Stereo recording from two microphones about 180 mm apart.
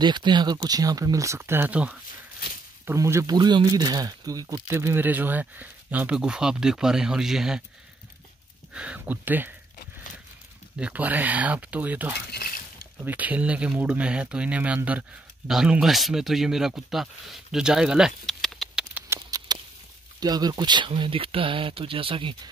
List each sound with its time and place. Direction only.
0.0 s speech: 25° right (ahead or behind); by 7.6 s 5° right (ahead or behind)
8.7 s speech: 5° right (ahead or behind)
10.8 s speech: 10° right (ahead or behind)
12.3 s a sound: 60° left (ahead or behind)
13.0 s speech: 10° right (ahead or behind)
19.0 s clip-clop: 20° right (ahead or behind)
20.2 s speech: 20° right (ahead or behind)